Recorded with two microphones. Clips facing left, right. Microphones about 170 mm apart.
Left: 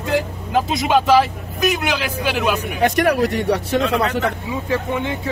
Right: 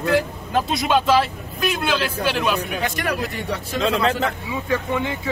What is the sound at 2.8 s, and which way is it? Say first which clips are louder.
Speech: left 8 dB; 65° left (ahead or behind).